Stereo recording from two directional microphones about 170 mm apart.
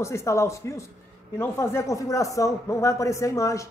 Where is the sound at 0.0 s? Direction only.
15° left (ahead or behind).